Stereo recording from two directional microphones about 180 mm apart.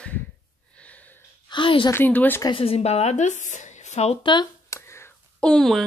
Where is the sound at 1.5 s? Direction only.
30° left (ahead or behind).